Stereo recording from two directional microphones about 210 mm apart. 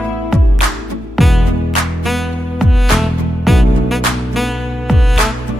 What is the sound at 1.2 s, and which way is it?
Music, centre (ahead or behind).